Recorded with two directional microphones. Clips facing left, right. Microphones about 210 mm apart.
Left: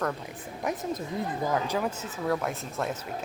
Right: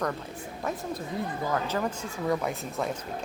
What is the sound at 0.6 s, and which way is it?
A woman's voice, 15° left (ahead or behind).